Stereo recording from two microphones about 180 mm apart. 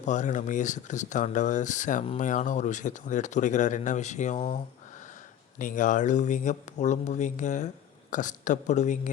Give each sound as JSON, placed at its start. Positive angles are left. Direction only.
{"t": 0.0, "sound": "speech", "side_deg": 40}
{"t": 5.5, "sound": "speech", "side_deg": 45}